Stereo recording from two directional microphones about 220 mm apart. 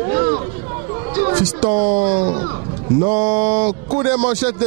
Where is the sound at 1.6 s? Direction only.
30° right (ahead or behind).